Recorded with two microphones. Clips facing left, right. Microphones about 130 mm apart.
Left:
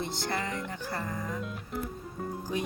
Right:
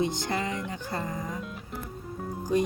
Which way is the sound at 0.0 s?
15° right (ahead or behind).